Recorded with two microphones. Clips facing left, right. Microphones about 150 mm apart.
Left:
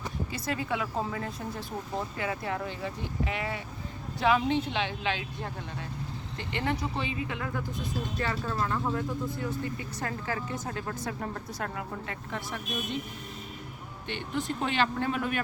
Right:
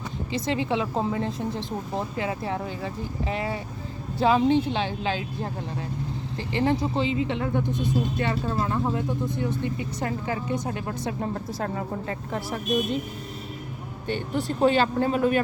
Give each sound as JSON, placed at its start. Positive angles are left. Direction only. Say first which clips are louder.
{"t": 0.3, "sound": "speech", "louder": "right 7 dB", "side_deg": -25}
{"t": 6.5, "sound": "speech", "louder": "right 7 dB", "side_deg": -30}
{"t": 7.6, "sound": "speech", "louder": "right 9 dB", "side_deg": 0}
{"t": 8.2, "sound": "speech", "louder": "right 5 dB", "side_deg": -20}
{"t": 14.1, "sound": "speech", "louder": "right 5 dB", "side_deg": -35}